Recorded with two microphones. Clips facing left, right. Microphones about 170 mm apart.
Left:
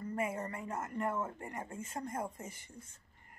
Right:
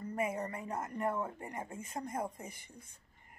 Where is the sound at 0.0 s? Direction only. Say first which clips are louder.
Right 1 dB; 20° right (ahead or behind).